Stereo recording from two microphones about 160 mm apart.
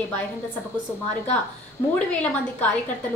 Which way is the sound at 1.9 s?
10° left (ahead or behind).